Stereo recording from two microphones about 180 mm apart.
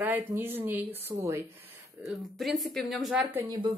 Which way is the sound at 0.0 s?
10° right (ahead or behind).